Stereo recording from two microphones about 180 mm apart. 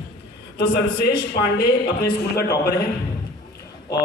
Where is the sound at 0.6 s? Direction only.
65° left (ahead or behind).